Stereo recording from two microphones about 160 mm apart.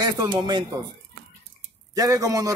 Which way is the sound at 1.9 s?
20° right (ahead or behind).